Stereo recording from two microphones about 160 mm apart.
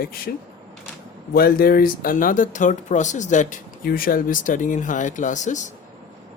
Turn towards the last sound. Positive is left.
turn(degrees=50)  # may be behind; listen again after turning